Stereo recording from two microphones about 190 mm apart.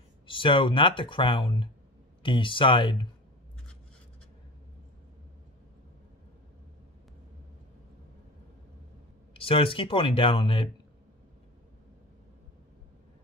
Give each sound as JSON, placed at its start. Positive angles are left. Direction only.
{"t": 0.3, "sound": "speech", "side_deg": 25}
{"t": 9.3, "sound": "speech", "side_deg": 30}